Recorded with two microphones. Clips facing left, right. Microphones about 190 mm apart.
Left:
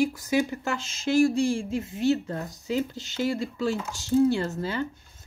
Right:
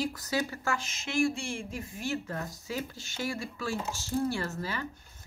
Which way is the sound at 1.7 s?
25° left (ahead or behind).